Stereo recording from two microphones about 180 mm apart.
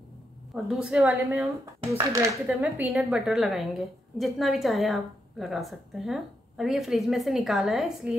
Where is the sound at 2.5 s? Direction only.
10° right (ahead or behind).